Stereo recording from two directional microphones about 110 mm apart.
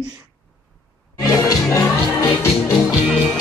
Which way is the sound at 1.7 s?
30° left (ahead or behind).